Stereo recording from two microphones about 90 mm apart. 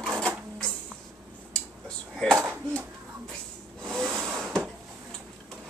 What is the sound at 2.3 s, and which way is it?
Speech, 20° right (ahead or behind).